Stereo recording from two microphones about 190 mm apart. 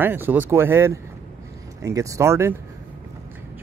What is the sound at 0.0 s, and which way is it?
Speech, 10° right (ahead or behind).